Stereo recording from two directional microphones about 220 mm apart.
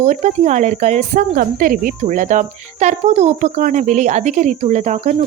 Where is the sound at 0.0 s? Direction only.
35° right (ahead or behind).